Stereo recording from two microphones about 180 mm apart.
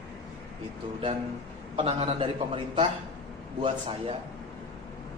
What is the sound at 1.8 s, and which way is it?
Speech, 35° right (ahead or behind).